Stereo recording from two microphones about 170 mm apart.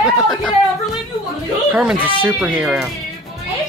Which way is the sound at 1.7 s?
5° right (ahead or behind).